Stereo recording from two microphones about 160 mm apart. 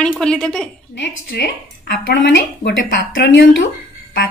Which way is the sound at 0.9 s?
75° left (ahead or behind).